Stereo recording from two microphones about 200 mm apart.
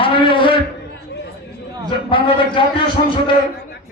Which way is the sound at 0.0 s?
25° left (ahead or behind).